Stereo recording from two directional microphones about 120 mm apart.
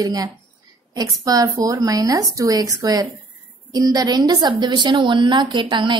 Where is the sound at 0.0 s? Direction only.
35° right (ahead or behind).